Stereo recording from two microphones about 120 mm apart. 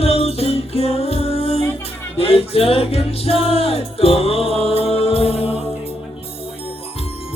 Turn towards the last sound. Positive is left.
turn(degrees=55)  # may be behind; listen again after turning